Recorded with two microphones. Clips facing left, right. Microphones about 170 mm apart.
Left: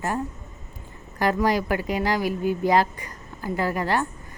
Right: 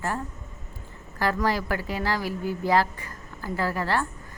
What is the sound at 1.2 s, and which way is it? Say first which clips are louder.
Speech: left 3 dB; 15° left (ahead or behind).